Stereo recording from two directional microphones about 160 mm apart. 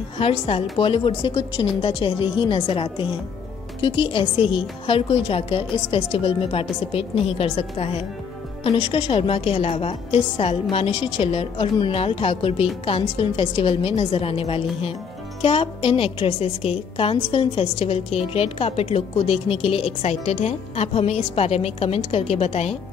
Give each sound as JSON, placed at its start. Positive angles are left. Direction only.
{"t": 0.2, "sound": "a woman's voice", "side_deg": 35}